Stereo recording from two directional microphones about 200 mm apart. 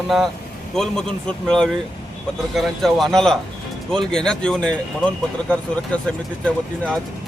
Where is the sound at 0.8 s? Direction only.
5° left (ahead or behind).